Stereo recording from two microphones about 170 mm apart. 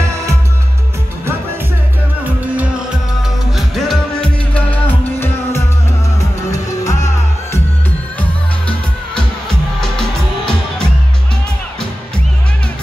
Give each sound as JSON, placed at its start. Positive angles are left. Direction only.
{"t": 3.5, "sound": "music", "side_deg": 0}
{"t": 8.2, "sound": "music", "side_deg": 5}